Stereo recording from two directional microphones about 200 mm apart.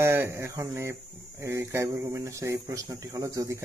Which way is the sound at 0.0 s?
10° right (ahead or behind).